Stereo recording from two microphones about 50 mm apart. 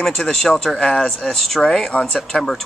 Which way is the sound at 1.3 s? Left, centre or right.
Centre.